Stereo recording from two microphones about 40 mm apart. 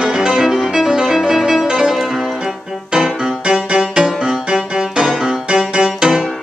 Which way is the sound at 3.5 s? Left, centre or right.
Right.